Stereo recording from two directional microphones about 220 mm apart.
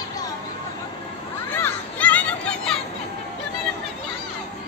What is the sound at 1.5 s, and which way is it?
Children playing, 5° left (ahead or behind).